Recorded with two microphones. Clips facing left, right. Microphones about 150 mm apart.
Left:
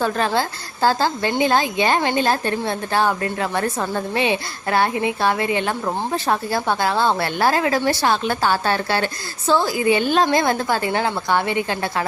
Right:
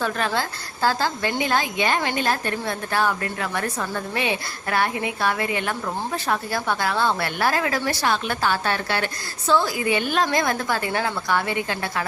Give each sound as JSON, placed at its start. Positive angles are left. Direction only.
{"t": 0.0, "sound": "a woman's voice", "side_deg": 30}